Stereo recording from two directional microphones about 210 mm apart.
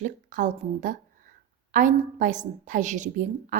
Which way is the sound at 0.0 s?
35° right (ahead or behind).